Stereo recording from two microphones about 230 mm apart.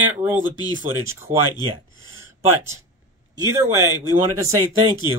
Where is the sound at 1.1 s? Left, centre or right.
Centre.